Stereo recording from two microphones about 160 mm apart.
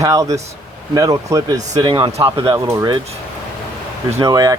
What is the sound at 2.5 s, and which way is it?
Speech, 20° right (ahead or behind).